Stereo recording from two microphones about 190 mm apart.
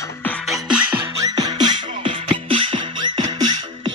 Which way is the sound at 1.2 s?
20° right (ahead or behind).